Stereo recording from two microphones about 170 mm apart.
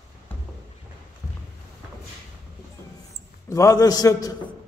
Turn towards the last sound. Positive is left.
turn(degrees=20)  # may be behind; listen again after turning